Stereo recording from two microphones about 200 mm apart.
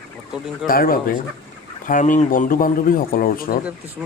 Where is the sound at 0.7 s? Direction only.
45° left (ahead or behind).